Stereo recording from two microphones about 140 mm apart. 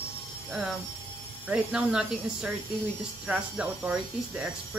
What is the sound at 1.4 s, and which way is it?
Speech, 5° right (ahead or behind).